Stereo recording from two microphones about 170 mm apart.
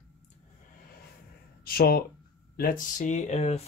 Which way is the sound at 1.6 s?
60° left (ahead or behind).